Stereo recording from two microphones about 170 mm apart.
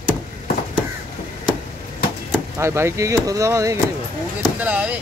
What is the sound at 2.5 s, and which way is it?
Speech, 15° right (ahead or behind).